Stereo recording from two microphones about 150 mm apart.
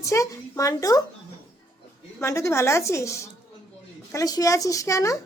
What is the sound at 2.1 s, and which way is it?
Speech, 20° left (ahead or behind).